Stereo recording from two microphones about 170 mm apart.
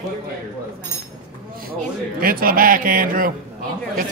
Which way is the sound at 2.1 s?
60° right (ahead or behind).